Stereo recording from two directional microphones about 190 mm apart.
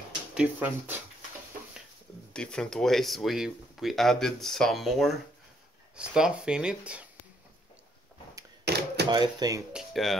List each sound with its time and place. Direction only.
0.3 s speech: 5° right (ahead or behind)
2.3 s speech: 5° left (ahead or behind)
8.6 s typewriter: 60° right (ahead or behind)
9.1 s speech: 20° right (ahead or behind)
9.7 s a sound: centre (ahead or behind)